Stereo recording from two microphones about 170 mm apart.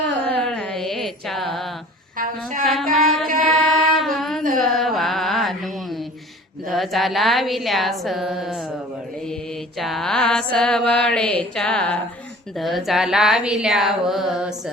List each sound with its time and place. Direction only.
0.3 s carnatic music: 5° left (ahead or behind)
2.1 s a sound: 50° right (ahead or behind)
2.9 s music: centre (ahead or behind)
3.4 s singing: centre (ahead or behind)
4.5 s music: centre (ahead or behind)
6.7 s mantra: centre (ahead or behind)
9.7 s mantra: centre (ahead or behind)